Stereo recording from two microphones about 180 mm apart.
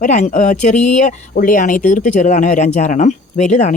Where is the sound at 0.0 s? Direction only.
40° left (ahead or behind).